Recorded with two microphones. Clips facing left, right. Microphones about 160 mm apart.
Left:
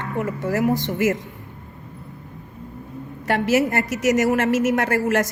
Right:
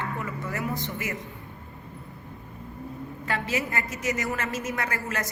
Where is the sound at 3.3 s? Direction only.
75° left (ahead or behind).